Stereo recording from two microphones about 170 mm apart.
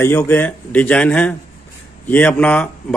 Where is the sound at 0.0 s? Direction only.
10° left (ahead or behind).